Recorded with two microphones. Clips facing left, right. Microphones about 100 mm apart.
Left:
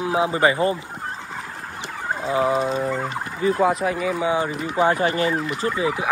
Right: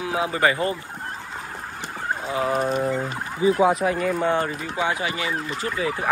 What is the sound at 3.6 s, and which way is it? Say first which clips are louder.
Speech: right 1 dB; centre (ahead or behind).